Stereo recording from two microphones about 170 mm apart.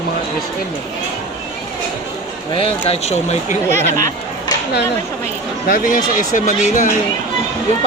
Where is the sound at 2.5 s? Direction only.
35° left (ahead or behind).